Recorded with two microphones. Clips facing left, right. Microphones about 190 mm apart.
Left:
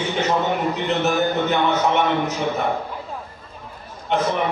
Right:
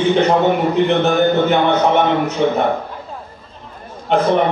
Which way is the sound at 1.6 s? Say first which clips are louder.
Right 5 dB; 60° right (ahead or behind).